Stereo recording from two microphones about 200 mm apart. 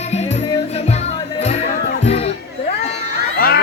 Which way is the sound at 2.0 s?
30° left (ahead or behind).